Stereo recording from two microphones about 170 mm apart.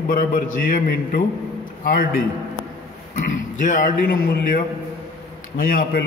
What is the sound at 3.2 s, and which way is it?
A man's voice, 50° left (ahead or behind).